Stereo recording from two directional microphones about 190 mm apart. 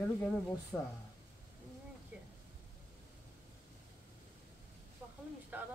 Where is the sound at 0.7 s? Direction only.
10° left (ahead or behind).